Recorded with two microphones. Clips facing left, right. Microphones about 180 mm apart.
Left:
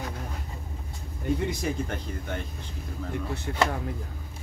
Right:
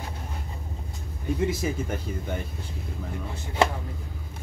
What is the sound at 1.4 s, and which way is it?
Speech, 5° right (ahead or behind).